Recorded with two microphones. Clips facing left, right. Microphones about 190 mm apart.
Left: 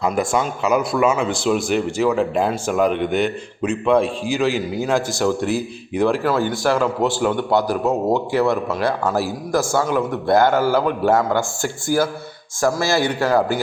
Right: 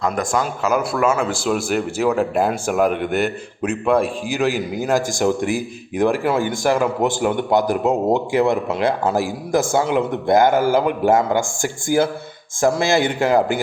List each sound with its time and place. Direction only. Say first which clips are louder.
0.0 s a man's voice: left 1 dB; 5° left (ahead or behind); by 13.4 s 20° right (ahead or behind)